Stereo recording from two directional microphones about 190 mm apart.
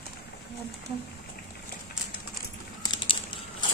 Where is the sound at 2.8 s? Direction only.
25° left (ahead or behind).